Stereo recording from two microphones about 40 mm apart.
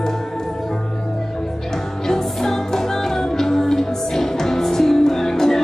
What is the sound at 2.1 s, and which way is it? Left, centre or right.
Music, centre.